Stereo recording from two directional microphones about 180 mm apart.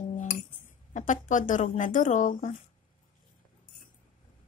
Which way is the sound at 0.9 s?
45° left (ahead or behind).